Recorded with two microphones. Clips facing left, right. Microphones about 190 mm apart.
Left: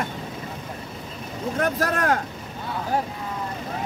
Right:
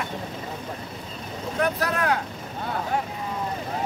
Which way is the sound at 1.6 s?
45° left (ahead or behind).